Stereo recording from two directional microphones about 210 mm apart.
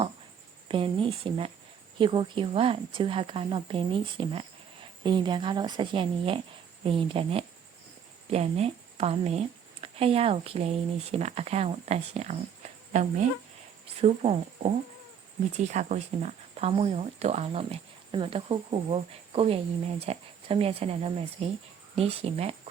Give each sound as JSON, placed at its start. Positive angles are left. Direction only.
{"t": 0.7, "sound": "speech", "side_deg": -25}